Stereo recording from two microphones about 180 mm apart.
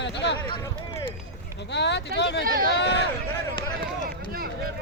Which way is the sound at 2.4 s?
55° right (ahead or behind).